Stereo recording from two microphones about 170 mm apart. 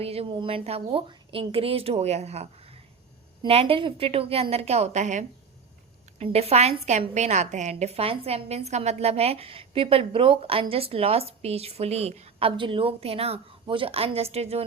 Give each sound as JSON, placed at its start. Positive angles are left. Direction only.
{"t": 0.0, "sound": "a woman's voice", "side_deg": -35}